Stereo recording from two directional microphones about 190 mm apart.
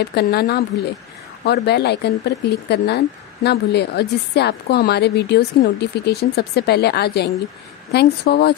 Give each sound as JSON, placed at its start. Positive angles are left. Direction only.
{"t": 0.0, "sound": "a woman's voice", "side_deg": 55}